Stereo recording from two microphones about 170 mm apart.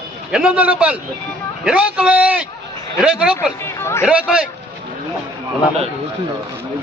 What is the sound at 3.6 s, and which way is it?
Speech, 15° left (ahead or behind).